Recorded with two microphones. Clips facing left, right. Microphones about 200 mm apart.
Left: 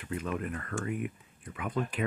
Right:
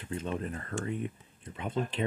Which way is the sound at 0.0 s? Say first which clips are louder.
Even; 30° right (ahead or behind).